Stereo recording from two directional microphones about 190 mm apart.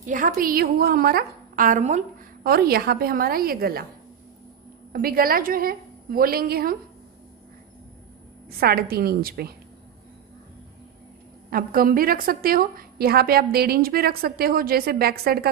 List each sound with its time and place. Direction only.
0.0 s a woman's voice: 45° right (ahead or behind)
2.4 s a woman's voice: 55° right (ahead or behind)
4.9 s a woman's voice: 50° right (ahead or behind)
8.5 s a woman's voice: 55° right (ahead or behind)
11.5 s a woman's voice: 50° right (ahead or behind)